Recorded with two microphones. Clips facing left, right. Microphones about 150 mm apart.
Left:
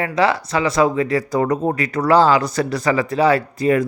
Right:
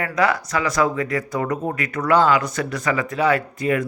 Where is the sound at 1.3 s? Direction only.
35° left (ahead or behind).